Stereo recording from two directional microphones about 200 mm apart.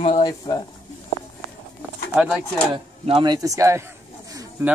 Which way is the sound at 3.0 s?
25° right (ahead or behind).